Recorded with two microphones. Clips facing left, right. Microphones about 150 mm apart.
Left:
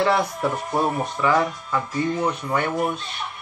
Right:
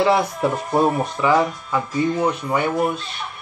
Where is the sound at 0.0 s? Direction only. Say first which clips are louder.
Right 3 dB; 15° right (ahead or behind).